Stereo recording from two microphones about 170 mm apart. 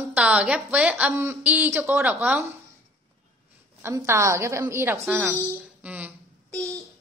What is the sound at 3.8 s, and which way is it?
A man's voice, 15° right (ahead or behind).